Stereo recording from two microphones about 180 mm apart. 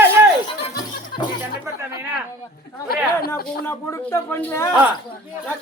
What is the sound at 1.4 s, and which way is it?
Music, 15° right (ahead or behind).